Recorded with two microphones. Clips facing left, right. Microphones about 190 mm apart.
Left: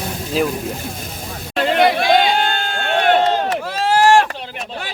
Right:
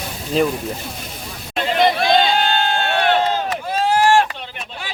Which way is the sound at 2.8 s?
50° left (ahead or behind).